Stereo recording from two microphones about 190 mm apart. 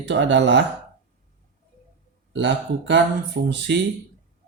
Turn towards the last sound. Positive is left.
turn(degrees=-65)  # may be behind; listen again after turning